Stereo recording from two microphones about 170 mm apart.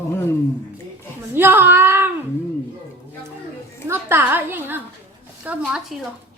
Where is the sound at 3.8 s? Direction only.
15° right (ahead or behind).